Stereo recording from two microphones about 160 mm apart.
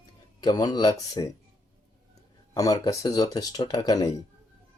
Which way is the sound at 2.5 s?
20° left (ahead or behind).